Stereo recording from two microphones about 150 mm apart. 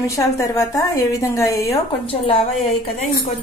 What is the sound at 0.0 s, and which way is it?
Cutlery, 20° left (ahead or behind).